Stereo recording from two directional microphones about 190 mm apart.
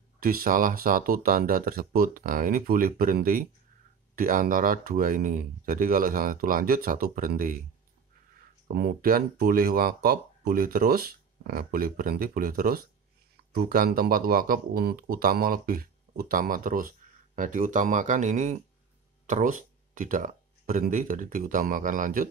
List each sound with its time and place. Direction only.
0.2 s speech: 50° right (ahead or behind)
8.6 s speech: 50° right (ahead or behind)